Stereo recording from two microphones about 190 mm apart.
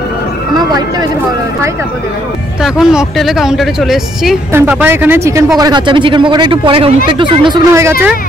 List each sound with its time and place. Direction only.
2.6 s speech: 5° right (ahead or behind); by 7.9 s 20° right (ahead or behind)